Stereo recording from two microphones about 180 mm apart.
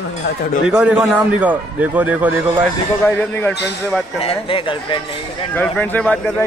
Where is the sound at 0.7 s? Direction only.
5° right (ahead or behind).